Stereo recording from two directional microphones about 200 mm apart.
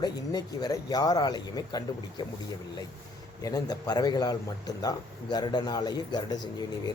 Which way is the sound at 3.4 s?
20° left (ahead or behind).